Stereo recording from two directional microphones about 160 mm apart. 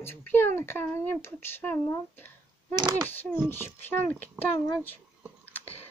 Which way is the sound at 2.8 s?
25° right (ahead or behind).